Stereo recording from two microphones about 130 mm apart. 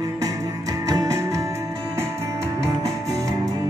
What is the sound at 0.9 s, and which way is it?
Music, 25° right (ahead or behind).